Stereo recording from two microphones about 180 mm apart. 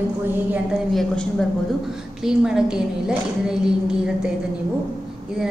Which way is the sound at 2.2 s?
5° right (ahead or behind).